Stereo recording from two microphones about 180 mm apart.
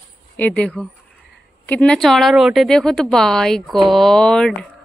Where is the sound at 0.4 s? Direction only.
5° left (ahead or behind).